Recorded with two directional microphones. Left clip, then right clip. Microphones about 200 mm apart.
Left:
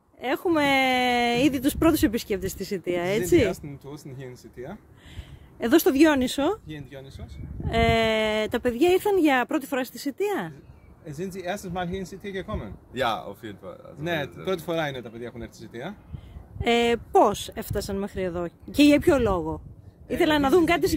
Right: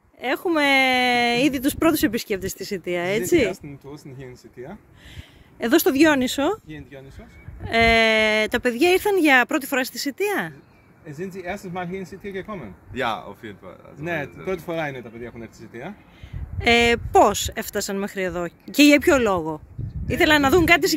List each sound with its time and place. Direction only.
0.2 s speech: centre (ahead or behind)
5.6 s speech: centre (ahead or behind)
11.1 s speech: 10° left (ahead or behind)
13.1 s speech: 35° left (ahead or behind)
14.0 s speech: 5° right (ahead or behind)